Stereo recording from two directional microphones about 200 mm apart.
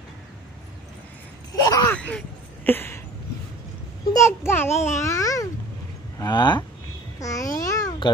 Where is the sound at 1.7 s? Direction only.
15° left (ahead or behind).